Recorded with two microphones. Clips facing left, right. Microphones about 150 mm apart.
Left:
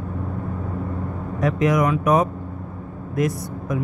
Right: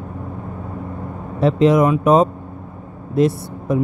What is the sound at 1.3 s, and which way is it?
Speech, 30° right (ahead or behind).